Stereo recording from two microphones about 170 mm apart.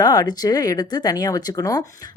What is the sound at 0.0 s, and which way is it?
Speech, 25° left (ahead or behind).